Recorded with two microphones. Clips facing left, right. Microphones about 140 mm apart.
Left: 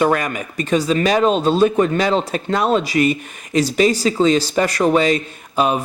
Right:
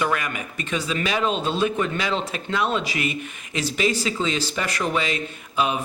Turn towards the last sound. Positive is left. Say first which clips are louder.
# left 6 dB
turn(degrees=40)  # may be behind; listen again after turning